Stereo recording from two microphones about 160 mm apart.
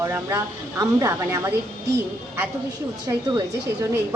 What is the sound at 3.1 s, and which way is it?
Speech, 20° right (ahead or behind).